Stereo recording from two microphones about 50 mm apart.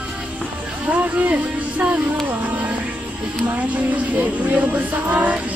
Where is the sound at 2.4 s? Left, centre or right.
Right.